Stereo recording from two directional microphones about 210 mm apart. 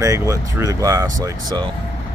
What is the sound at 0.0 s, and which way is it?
Speech, 15° right (ahead or behind).